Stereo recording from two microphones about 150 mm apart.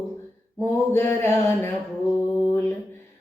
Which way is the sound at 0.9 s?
15° left (ahead or behind).